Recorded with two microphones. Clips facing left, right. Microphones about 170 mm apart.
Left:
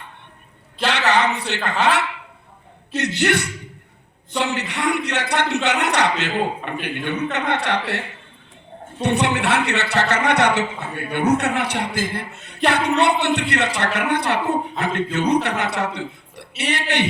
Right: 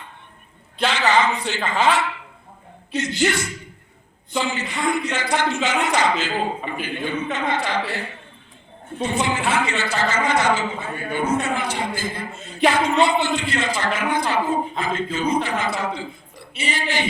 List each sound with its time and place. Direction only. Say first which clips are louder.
0.9 s a man's voice: even; 70° left (ahead or behind)
3.2 s a man's voice: left 1 dB; 65° left (ahead or behind)